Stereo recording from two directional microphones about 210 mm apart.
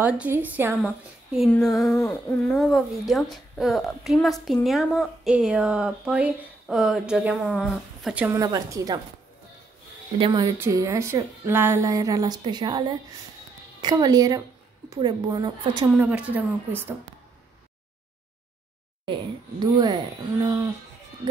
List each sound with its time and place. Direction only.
0.0 s a woman's voice: 10° right (ahead or behind)
8.4 s a woman's voice: 15° right (ahead or behind)
10.1 s a woman's voice: 20° right (ahead or behind)
15.9 s a woman's voice: 5° right (ahead or behind)
19.6 s speech: 20° right (ahead or behind)